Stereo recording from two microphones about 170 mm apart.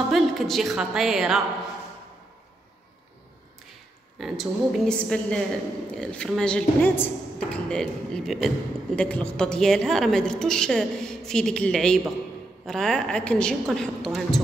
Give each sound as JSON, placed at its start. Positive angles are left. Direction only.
{"t": 0.1, "sound": "a sound", "side_deg": 0}
{"t": 0.7, "sound": "a woman's voice", "side_deg": 0}
{"t": 4.2, "sound": "a woman's voice", "side_deg": 0}